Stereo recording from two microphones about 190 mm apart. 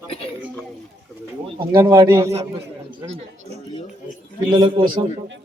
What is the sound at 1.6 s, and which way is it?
Speech, 25° right (ahead or behind).